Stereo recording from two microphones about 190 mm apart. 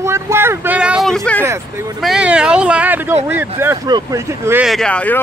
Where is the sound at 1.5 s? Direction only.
15° right (ahead or behind).